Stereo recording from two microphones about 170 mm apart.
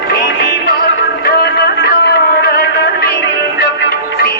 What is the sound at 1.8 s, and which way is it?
Music, 75° left (ahead or behind).